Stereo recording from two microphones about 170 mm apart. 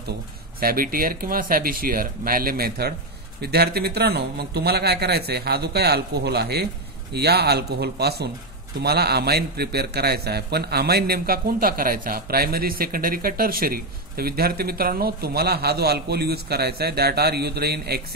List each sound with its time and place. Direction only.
0.6 s a man's voice: 60° right (ahead or behind)